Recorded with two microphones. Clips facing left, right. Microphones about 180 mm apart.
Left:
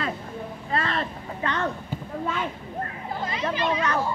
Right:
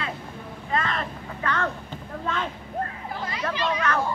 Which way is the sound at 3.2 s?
20° left (ahead or behind).